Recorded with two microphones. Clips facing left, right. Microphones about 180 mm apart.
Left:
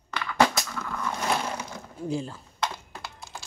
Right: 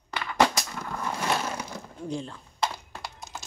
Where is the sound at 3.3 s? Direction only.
20° right (ahead or behind).